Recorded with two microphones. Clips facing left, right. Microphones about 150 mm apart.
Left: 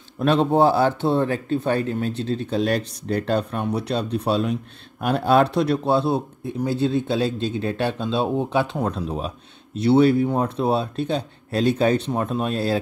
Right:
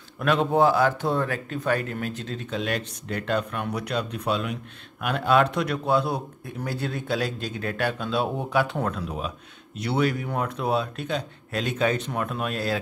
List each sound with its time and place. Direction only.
0.2 s a man's voice: 30° left (ahead or behind)